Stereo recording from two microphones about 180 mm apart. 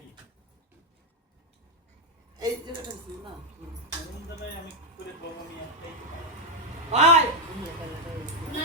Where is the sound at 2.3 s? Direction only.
20° right (ahead or behind).